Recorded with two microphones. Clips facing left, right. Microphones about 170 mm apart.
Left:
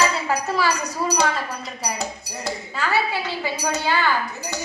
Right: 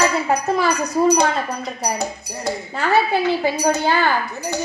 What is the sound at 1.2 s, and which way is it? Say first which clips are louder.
Speech: right 3 dB; 55° right (ahead or behind).